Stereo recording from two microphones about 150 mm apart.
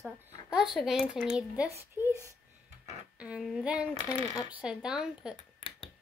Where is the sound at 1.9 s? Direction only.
15° right (ahead or behind).